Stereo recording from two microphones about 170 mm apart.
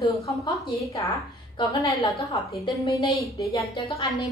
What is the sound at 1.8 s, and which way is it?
A woman's voice, 20° left (ahead or behind).